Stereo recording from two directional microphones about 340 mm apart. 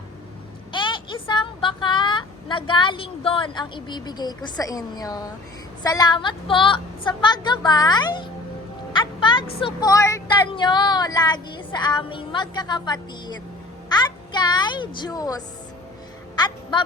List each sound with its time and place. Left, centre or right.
0.7 s a child's voice: centre